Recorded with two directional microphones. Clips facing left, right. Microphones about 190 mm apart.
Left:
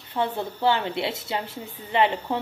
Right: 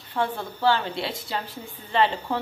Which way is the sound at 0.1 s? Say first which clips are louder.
Left 1 dB; 20° left (ahead or behind).